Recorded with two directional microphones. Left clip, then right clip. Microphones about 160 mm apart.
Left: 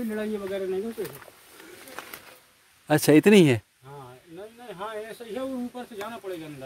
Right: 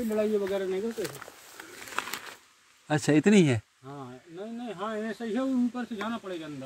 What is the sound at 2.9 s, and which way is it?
Speech, 35° left (ahead or behind).